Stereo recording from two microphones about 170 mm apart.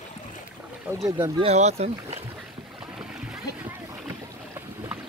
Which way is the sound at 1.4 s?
40° right (ahead or behind).